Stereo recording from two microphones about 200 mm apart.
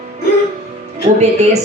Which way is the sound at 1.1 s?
35° right (ahead or behind).